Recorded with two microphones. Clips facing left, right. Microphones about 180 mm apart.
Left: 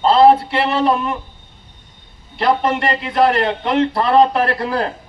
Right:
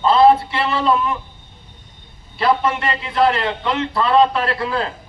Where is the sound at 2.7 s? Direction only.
60° left (ahead or behind).